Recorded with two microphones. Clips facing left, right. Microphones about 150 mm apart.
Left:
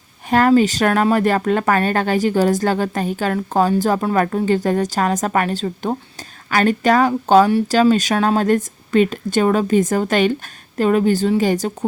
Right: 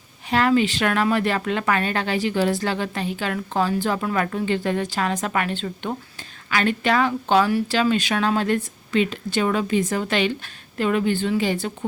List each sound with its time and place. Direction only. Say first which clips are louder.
0.3 s speech: left 5 dB; 45° left (ahead or behind)